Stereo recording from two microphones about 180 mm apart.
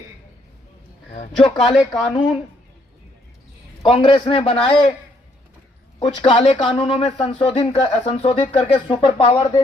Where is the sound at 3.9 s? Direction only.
30° left (ahead or behind).